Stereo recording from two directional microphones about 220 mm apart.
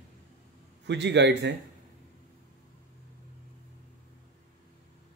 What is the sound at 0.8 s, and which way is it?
Speech, 50° right (ahead or behind).